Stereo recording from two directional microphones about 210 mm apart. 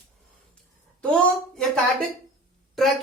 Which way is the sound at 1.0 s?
Centre (ahead or behind).